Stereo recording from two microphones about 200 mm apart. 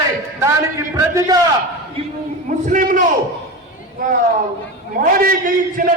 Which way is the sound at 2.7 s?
40° right (ahead or behind).